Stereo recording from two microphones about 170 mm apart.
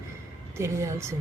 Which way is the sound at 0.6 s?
15° right (ahead or behind).